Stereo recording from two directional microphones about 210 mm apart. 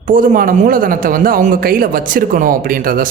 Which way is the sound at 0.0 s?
40° right (ahead or behind).